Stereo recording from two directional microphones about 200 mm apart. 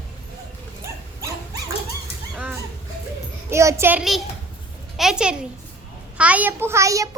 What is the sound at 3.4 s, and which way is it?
A woman's voice, 15° right (ahead or behind).